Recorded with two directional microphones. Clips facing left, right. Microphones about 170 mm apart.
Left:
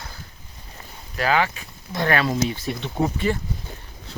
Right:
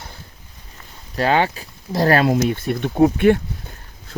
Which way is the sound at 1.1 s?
30° right (ahead or behind).